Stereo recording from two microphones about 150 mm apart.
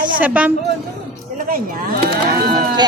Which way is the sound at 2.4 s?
30° right (ahead or behind).